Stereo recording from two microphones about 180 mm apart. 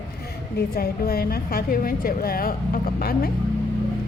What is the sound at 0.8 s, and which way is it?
A woman's voice, 55° left (ahead or behind).